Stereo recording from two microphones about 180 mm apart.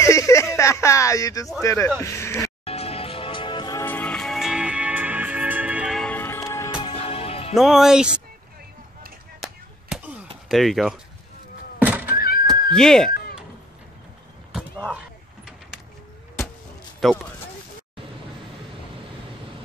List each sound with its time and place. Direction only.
0.0 s a sound: 15° left (ahead or behind)
1.6 s a man's voice: 15° left (ahead or behind)
2.6 s music: 35° left (ahead or behind)
3.8 s music: 10° left (ahead or behind); by 7.5 s 35° left (ahead or behind)
7.5 s speech: centre (ahead or behind)
9.9 s basketball bounce: 5° right (ahead or behind)
10.5 s speech: centre (ahead or behind)
11.8 s cat: 10° right (ahead or behind)
12.7 s speech: 5° left (ahead or behind)
14.5 s a sound: centre (ahead or behind)
17.0 s speech: centre (ahead or behind)